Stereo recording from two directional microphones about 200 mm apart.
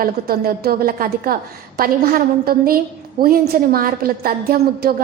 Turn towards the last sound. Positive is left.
turn(degrees=-50)  # may be behind; listen again after turning